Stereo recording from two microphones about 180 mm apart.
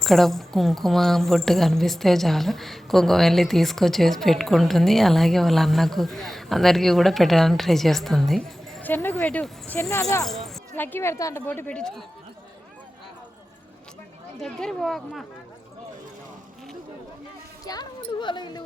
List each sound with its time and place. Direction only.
0.0 s a woman's voice: centre (ahead or behind); by 10.2 s 15° left (ahead or behind)
10.2 s speech: centre (ahead or behind)
14.4 s a woman's voice: centre (ahead or behind)
17.7 s speech: 25° left (ahead or behind)